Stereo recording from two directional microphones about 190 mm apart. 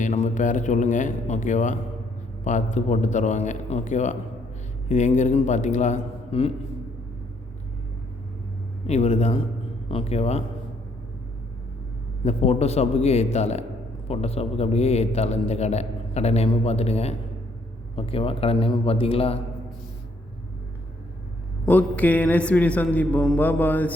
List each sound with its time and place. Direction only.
0.0 s a man's voice: 40° left (ahead or behind)
8.9 s a man's voice: 35° left (ahead or behind)
12.2 s a man's voice: 35° left (ahead or behind)
21.7 s a man's voice: 10° left (ahead or behind)